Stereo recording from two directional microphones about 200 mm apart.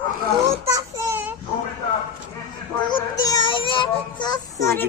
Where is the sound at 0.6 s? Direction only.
15° right (ahead or behind).